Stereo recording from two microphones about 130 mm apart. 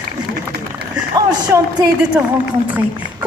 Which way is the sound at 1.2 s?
30° right (ahead or behind).